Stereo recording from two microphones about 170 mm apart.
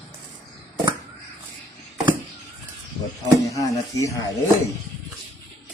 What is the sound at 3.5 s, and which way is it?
Speech, 20° left (ahead or behind).